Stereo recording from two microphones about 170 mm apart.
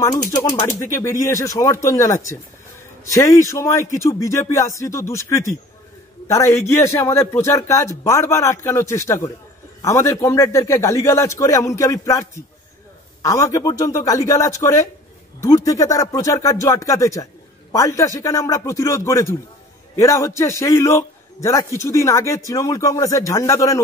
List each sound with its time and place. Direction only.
0.4 s a man's voice: 20° left (ahead or behind)